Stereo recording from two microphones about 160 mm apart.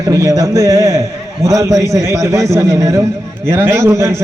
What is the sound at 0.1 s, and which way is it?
A man's voice, 20° right (ahead or behind).